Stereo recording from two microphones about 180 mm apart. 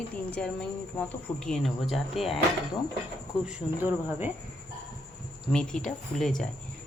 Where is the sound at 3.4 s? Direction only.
10° right (ahead or behind).